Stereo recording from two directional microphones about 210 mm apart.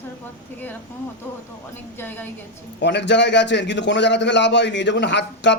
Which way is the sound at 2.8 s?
55° left (ahead or behind).